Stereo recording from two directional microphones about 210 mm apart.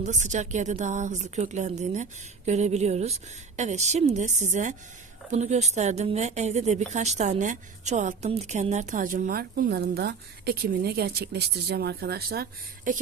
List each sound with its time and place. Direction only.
0.0 s a woman's voice: 35° right (ahead or behind)